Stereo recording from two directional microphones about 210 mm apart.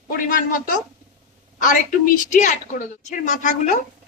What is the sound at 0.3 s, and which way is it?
Speech, 40° left (ahead or behind).